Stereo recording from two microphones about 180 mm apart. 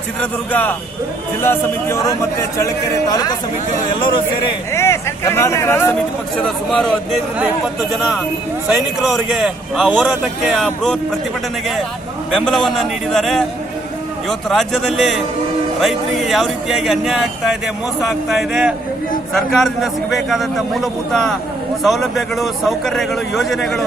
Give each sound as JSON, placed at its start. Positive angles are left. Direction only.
{"t": 0.2, "sound": "speech", "side_deg": 10}
{"t": 4.7, "sound": "a man's voice", "side_deg": 15}
{"t": 8.7, "sound": "a man's voice", "side_deg": -5}
{"t": 12.3, "sound": "a man's voice", "side_deg": 0}